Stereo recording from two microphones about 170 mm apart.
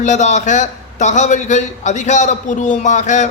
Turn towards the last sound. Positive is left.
turn(degrees=45)  # may be behind; listen again after turning